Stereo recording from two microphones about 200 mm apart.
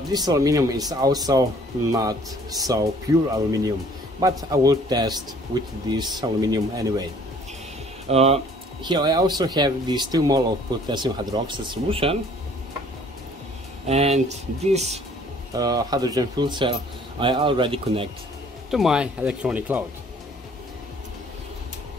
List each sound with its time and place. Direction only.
0.1 s a man's voice: 20° right (ahead or behind)
4.2 s a man's voice: 15° right (ahead or behind)
8.1 s a man's voice: 30° right (ahead or behind)
13.8 s speech: 30° right (ahead or behind)
15.5 s a man's voice: 20° right (ahead or behind)
18.7 s speech: centre (ahead or behind)